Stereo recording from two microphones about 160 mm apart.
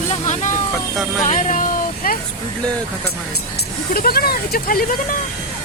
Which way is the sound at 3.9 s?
70° left (ahead or behind).